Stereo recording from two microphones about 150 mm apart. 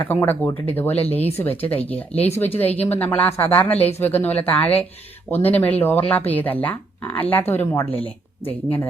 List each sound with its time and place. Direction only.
0.1 s speech: 15° left (ahead or behind)
3.8 s speech: 45° left (ahead or behind)
4.0 s speech: 10° left (ahead or behind)